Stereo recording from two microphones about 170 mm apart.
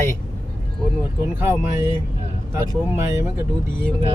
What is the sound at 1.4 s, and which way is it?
Speech, 15° right (ahead or behind).